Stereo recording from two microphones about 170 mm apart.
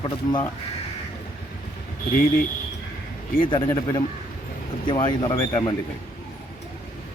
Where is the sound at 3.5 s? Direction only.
20° left (ahead or behind).